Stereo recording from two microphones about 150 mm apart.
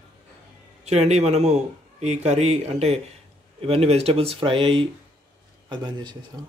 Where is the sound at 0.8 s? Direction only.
45° right (ahead or behind); by 6.1 s 30° right (ahead or behind).